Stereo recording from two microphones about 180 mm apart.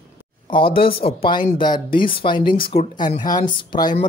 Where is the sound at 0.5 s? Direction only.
30° left (ahead or behind).